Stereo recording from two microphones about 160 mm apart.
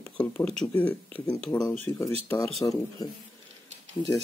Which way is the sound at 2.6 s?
20° left (ahead or behind).